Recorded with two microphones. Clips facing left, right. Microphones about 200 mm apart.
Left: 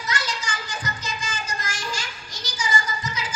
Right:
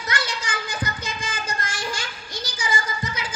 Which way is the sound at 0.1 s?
55° right (ahead or behind).